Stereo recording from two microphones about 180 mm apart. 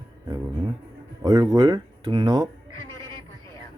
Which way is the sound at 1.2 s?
20° right (ahead or behind).